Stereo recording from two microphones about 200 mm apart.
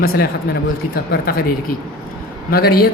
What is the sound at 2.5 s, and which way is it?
Speech, 50° left (ahead or behind).